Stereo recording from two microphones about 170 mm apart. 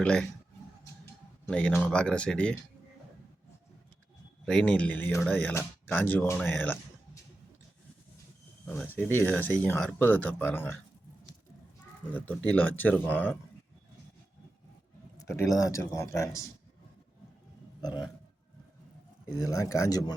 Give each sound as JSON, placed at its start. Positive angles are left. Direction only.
{"t": 0.0, "sound": "speech", "side_deg": 5}
{"t": 1.5, "sound": "speech", "side_deg": 5}
{"t": 4.4, "sound": "speech", "side_deg": 5}
{"t": 8.6, "sound": "speech", "side_deg": 10}
{"t": 12.1, "sound": "speech", "side_deg": 10}
{"t": 15.4, "sound": "speech", "side_deg": 20}
{"t": 17.7, "sound": "speech", "side_deg": 25}
{"t": 19.4, "sound": "speech", "side_deg": 20}